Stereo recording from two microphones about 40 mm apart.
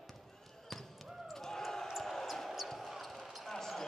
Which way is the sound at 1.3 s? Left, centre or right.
Centre.